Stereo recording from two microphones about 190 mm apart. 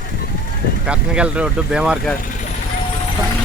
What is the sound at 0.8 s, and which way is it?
Speech, 5° right (ahead or behind).